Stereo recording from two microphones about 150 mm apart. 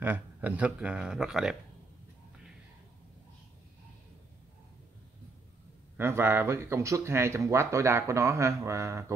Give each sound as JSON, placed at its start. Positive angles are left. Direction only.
{"t": 0.0, "sound": "speech", "side_deg": -10}
{"t": 5.9, "sound": "speech", "side_deg": -15}